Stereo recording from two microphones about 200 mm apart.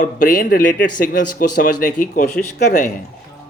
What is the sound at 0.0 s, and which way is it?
Speech, 40° left (ahead or behind).